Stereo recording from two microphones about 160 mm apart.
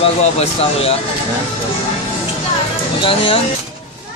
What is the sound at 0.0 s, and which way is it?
Speech, 35° left (ahead or behind).